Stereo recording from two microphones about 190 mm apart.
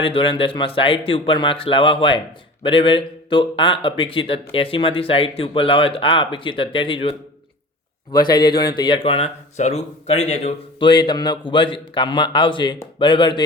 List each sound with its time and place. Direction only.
0.0 s speech: 25° left (ahead or behind)